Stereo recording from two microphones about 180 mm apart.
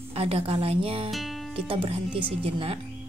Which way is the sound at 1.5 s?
30° right (ahead or behind).